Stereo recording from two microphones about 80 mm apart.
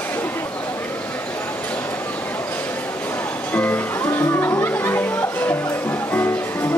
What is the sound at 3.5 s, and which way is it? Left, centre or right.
Music, centre.